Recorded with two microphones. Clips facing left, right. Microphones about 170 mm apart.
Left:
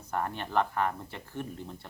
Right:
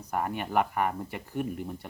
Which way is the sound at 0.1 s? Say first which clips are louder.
Right 2 dB; 10° right (ahead or behind).